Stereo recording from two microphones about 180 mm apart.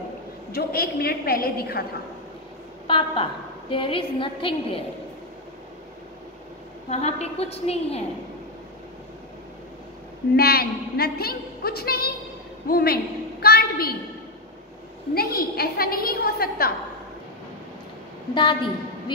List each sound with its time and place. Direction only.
0.5 s a woman's voice: 60° left (ahead or behind)
2.9 s a woman's voice: 30° left (ahead or behind)
6.9 s a woman's voice: 35° left (ahead or behind)
10.3 s a woman's voice: 60° left (ahead or behind)
15.1 s a woman's voice: 55° left (ahead or behind)
18.3 s a woman's voice: 25° left (ahead or behind)